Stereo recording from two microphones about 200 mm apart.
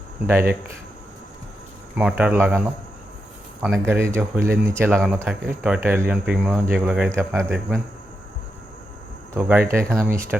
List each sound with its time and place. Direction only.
0.3 s speech: 10° right (ahead or behind)
2.0 s speech: 5° right (ahead or behind)
3.6 s speech: 10° right (ahead or behind)
4.9 s speech: centre (ahead or behind)
9.3 s speech: 10° right (ahead or behind)